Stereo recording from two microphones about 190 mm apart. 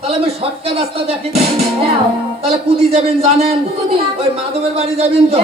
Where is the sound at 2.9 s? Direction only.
35° right (ahead or behind).